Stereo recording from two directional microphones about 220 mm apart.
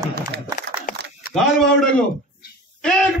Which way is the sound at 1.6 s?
5° left (ahead or behind).